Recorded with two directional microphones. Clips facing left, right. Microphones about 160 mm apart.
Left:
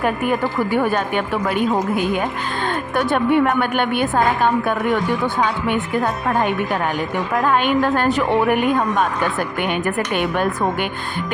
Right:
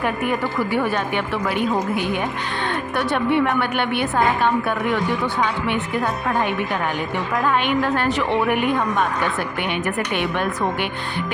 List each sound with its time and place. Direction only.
0.3 s a woman's voice: 45° left (ahead or behind)
2.9 s a woman's voice: 45° left (ahead or behind)
7.4 s a woman's voice: 45° left (ahead or behind)
10.2 s a woman's voice: 45° left (ahead or behind)